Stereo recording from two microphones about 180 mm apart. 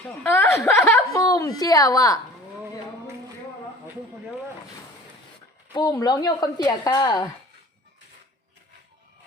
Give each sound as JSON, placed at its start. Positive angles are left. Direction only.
{"t": 0.2, "sound": "a woman's voice", "side_deg": 10}
{"t": 5.7, "sound": "a woman's voice", "side_deg": 20}